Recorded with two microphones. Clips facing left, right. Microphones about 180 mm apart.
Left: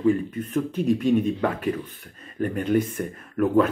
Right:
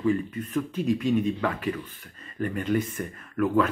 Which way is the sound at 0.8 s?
55° left (ahead or behind).